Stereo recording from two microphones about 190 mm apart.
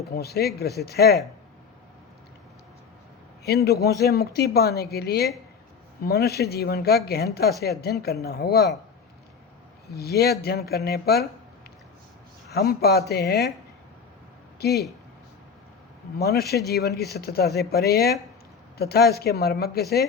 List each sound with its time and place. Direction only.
0.1 s speech: 55° left (ahead or behind)
3.4 s speech: 55° left (ahead or behind)
9.9 s speech: 55° left (ahead or behind)
12.5 s speech: 55° left (ahead or behind)
14.6 s speech: 55° left (ahead or behind)
16.1 s speech: 55° left (ahead or behind)